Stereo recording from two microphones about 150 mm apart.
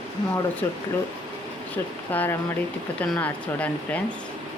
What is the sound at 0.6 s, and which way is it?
Speech, 15° left (ahead or behind).